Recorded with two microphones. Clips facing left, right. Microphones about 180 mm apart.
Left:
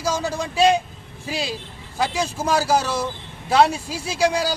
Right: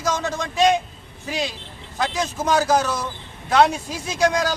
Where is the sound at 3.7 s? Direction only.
30° left (ahead or behind).